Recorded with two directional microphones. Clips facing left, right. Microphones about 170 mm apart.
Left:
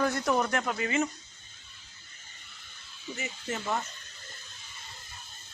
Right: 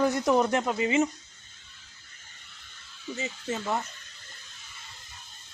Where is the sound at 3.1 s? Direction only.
25° right (ahead or behind).